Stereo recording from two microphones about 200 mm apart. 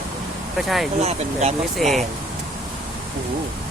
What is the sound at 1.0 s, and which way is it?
Speech, 35° right (ahead or behind).